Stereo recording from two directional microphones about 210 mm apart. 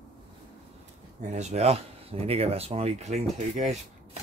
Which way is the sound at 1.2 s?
35° right (ahead or behind).